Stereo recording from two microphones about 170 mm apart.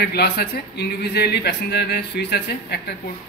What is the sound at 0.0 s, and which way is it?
A man's voice, 70° left (ahead or behind).